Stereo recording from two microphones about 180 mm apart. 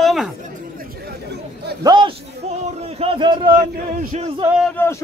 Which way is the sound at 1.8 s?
25° right (ahead or behind).